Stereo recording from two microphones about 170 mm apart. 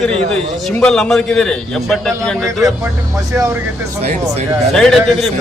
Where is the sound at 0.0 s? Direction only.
5° left (ahead or behind).